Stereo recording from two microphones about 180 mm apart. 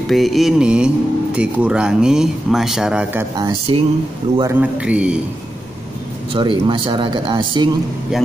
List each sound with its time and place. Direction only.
0.1 s speech: centre (ahead or behind)
3.3 s speech: 25° right (ahead or behind)
4.4 s a man's voice: 10° right (ahead or behind)
6.3 s speech: 25° right (ahead or behind)